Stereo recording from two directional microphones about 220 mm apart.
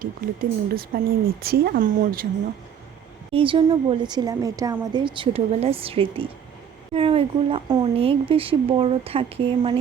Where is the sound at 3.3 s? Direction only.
25° right (ahead or behind).